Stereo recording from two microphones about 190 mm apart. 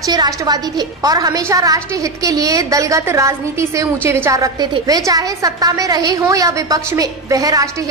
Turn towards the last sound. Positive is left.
turn(degrees=-20)  # may be behind; listen again after turning